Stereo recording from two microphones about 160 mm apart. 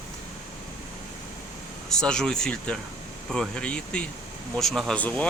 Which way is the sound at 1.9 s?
5° left (ahead or behind).